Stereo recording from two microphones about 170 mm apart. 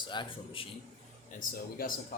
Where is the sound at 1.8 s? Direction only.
60° left (ahead or behind).